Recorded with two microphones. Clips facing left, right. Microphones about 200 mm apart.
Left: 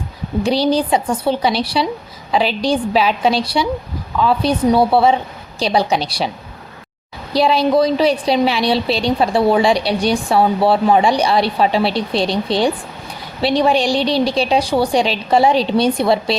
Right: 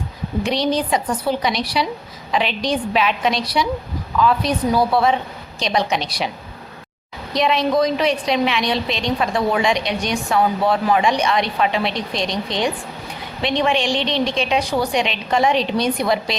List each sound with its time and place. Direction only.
0.4 s a woman's voice: 30° left (ahead or behind)
7.3 s a woman's voice: 35° left (ahead or behind)